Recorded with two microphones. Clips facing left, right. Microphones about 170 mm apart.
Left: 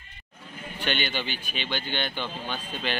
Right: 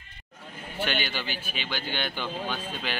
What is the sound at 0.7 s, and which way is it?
Speech, 5° right (ahead or behind).